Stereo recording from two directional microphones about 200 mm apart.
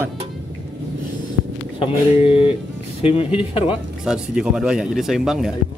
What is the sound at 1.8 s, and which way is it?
Speech, 30° left (ahead or behind).